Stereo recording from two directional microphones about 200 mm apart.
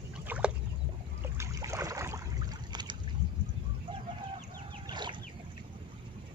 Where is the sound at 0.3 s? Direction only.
10° right (ahead or behind).